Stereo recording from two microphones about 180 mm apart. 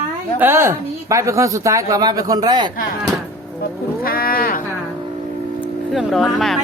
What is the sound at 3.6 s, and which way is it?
Livestock, 55° left (ahead or behind).